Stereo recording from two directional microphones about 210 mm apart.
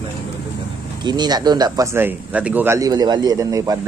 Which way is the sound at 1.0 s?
20° right (ahead or behind).